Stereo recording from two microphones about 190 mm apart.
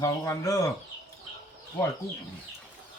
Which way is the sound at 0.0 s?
15° left (ahead or behind).